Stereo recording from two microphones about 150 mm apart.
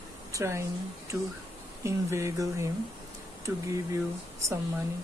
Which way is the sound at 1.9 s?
20° right (ahead or behind).